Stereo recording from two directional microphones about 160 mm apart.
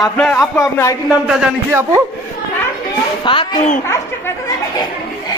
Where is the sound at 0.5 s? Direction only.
20° left (ahead or behind).